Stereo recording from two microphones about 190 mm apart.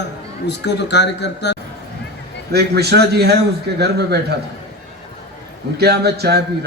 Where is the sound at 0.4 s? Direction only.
65° left (ahead or behind).